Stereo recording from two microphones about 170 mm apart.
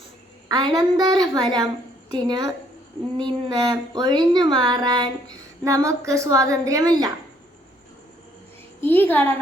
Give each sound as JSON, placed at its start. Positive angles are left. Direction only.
{"t": 0.5, "sound": "speech", "side_deg": -25}
{"t": 8.8, "sound": "a woman's voice", "side_deg": 10}